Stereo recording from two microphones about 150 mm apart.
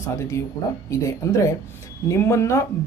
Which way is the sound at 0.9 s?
20° left (ahead or behind).